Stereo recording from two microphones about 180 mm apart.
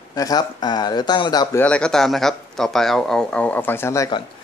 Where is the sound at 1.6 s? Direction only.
5° left (ahead or behind).